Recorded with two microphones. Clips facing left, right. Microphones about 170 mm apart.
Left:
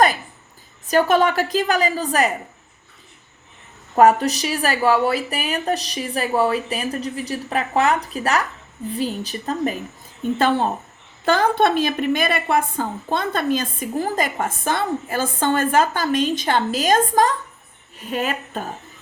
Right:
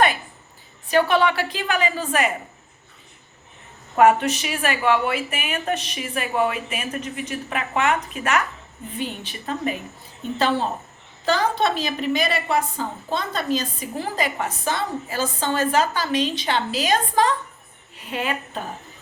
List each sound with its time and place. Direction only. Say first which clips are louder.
0.9 s speech: left 2 dB; 45° left (ahead or behind)
3.9 s speech: left 2 dB; 35° left (ahead or behind)
10.3 s a woman's voice: left 2 dB; 50° left (ahead or behind)